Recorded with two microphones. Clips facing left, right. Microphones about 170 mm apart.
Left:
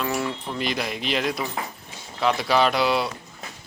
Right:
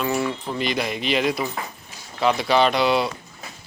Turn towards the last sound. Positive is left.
turn(degrees=0)  # may be behind; listen again after turning